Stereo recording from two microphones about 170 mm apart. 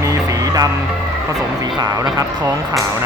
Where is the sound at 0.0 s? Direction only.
20° right (ahead or behind).